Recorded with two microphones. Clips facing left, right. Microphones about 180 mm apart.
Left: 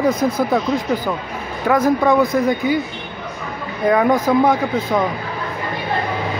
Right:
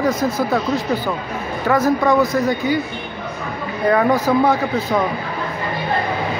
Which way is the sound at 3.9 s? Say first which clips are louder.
Left 1 dB; 5° left (ahead or behind).